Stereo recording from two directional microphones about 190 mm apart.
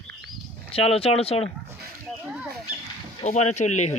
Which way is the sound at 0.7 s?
30° left (ahead or behind).